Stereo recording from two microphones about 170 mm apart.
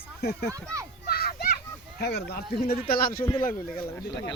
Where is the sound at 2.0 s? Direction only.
75° left (ahead or behind); by 3.2 s 60° left (ahead or behind).